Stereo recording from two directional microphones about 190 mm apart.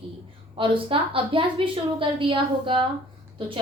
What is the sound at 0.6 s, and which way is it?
A woman's voice, 25° right (ahead or behind).